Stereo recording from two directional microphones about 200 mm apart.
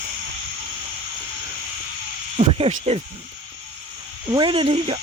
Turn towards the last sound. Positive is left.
turn(degrees=-25)  # may be behind; listen again after turning